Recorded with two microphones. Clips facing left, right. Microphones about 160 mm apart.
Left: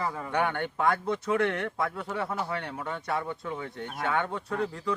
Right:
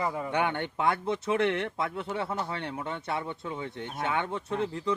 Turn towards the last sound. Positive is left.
turn(degrees=-20)  # may be behind; listen again after turning